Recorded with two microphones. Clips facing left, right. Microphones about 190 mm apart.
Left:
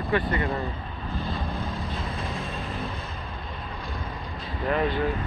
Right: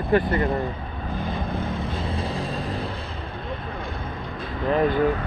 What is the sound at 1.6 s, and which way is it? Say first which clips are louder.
Vehicle: right 4 dB; 30° right (ahead or behind).